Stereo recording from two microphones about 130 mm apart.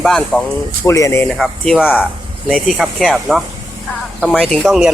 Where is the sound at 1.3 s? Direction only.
5° left (ahead or behind).